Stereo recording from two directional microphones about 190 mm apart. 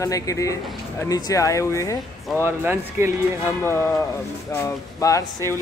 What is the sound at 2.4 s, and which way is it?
Speech, 10° right (ahead or behind).